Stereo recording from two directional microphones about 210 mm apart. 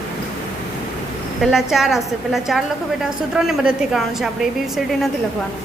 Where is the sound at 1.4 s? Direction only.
Centre (ahead or behind).